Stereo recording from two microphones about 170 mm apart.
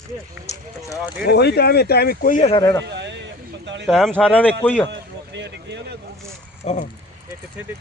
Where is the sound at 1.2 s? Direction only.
75° left (ahead or behind).